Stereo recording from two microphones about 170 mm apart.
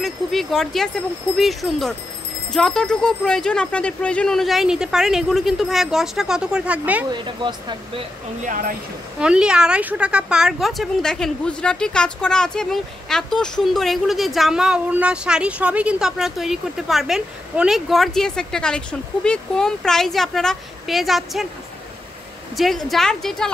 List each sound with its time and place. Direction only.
0.0 s speech: centre (ahead or behind)
7.1 s speech: 25° right (ahead or behind)
8.5 s speech: 55° right (ahead or behind)
9.2 s speech: 5° right (ahead or behind)
22.6 s speech: centre (ahead or behind)